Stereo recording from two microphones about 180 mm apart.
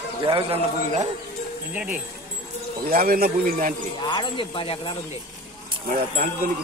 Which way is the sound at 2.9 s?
55° right (ahead or behind).